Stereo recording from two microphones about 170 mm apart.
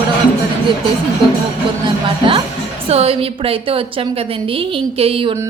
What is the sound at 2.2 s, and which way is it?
A woman's voice, 30° right (ahead or behind).